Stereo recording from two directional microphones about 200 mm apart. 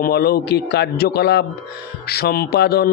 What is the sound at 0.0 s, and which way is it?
A man's voice, 50° left (ahead or behind).